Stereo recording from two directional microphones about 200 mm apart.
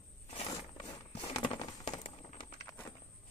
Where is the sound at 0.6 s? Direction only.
20° left (ahead or behind).